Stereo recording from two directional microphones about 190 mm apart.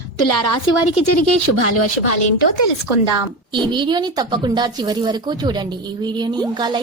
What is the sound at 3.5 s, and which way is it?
Speech, 25° right (ahead or behind).